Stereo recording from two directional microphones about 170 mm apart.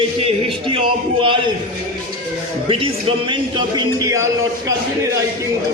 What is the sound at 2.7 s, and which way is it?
A man's voice, 30° right (ahead or behind).